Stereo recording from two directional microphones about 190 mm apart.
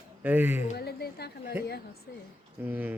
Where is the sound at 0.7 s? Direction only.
55° left (ahead or behind).